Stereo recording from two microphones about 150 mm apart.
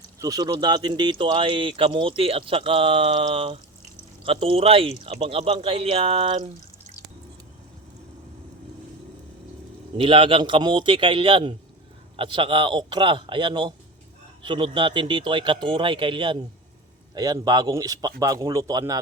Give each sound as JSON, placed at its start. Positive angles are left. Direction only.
{"t": 0.2, "sound": "speech", "side_deg": -25}
{"t": 10.0, "sound": "speech", "side_deg": -35}